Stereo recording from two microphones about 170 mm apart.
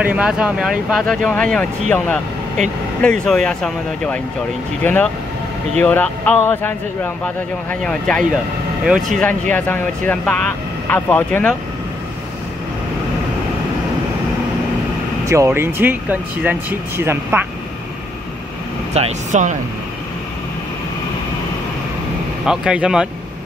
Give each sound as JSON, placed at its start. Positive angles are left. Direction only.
{"t": 0.0, "sound": "speech", "side_deg": -5}
{"t": 15.2, "sound": "speech", "side_deg": -15}
{"t": 18.9, "sound": "speech", "side_deg": -40}
{"t": 22.4, "sound": "speech", "side_deg": -5}